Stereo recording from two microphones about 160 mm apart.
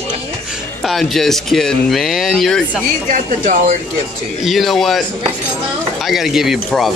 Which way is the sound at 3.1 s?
55° right (ahead or behind).